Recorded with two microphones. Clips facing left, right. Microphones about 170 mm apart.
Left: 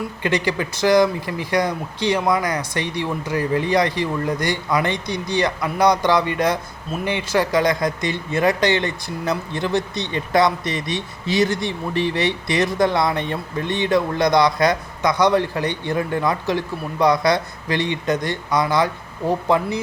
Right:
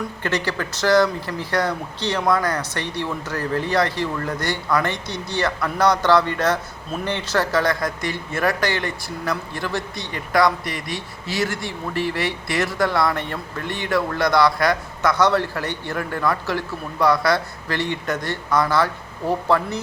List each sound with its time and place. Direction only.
0.2 s speech: 15° left (ahead or behind)